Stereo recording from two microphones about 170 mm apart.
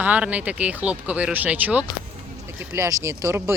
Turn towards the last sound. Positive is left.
turn(degrees=-15)  # may be behind; listen again after turning